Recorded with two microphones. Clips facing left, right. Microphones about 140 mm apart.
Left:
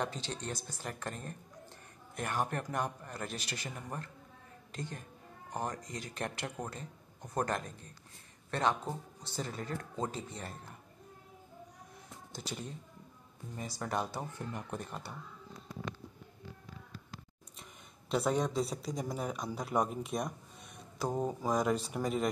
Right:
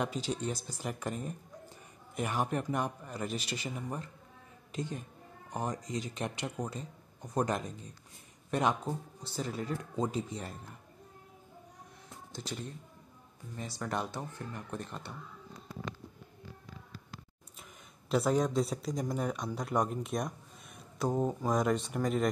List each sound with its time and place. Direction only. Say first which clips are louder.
0.0 s a man's voice: right 4 dB; 10° right (ahead or behind)
5.5 s speech: right 2 dB; centre (ahead or behind)
5.9 s speech: right 6 dB; 50° left (ahead or behind)
6.1 s a man's voice: right 2 dB; centre (ahead or behind)
8.5 s a man's voice: right 2 dB; 10° right (ahead or behind)
13.6 s a man's voice: even; 5° left (ahead or behind)
17.6 s speech: even; centre (ahead or behind)